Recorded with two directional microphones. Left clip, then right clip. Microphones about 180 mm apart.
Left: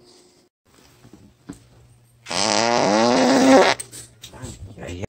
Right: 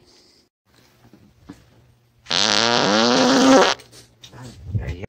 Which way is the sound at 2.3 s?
20° right (ahead or behind).